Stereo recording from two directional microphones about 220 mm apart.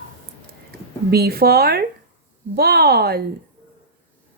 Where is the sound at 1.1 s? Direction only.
45° right (ahead or behind).